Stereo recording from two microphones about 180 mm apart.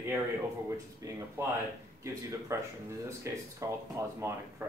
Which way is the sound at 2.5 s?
15° right (ahead or behind).